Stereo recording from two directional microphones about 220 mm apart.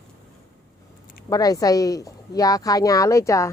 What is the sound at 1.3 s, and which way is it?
Speech, 15° left (ahead or behind).